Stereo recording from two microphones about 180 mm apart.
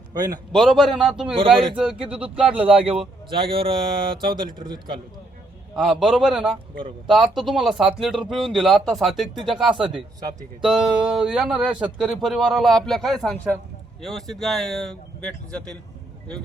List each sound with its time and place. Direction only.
0.1 s a man's voice: 20° right (ahead or behind)
0.5 s speech: centre (ahead or behind)
3.2 s speech: 30° right (ahead or behind)
5.7 s speech: centre (ahead or behind)